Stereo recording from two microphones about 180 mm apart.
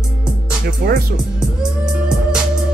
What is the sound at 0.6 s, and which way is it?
Speech, 55° right (ahead or behind).